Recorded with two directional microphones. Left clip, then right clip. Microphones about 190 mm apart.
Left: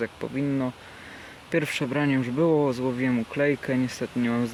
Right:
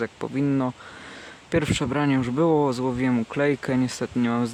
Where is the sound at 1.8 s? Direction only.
35° right (ahead or behind).